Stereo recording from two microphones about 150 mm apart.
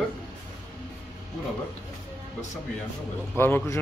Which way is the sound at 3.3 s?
15° left (ahead or behind).